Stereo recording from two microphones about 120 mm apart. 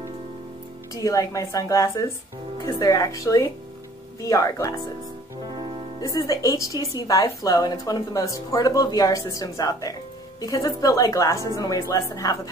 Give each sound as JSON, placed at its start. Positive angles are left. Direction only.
{"t": 0.9, "sound": "a woman's voice", "side_deg": 30}
{"t": 5.4, "sound": "music", "side_deg": -45}
{"t": 6.1, "sound": "a woman's voice", "side_deg": 30}